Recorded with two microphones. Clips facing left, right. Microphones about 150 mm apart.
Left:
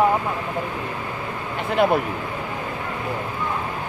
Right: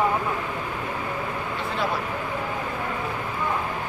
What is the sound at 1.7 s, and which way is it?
Speech, 60° left (ahead or behind).